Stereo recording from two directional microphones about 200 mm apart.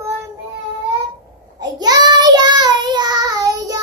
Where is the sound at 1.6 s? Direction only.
20° right (ahead or behind).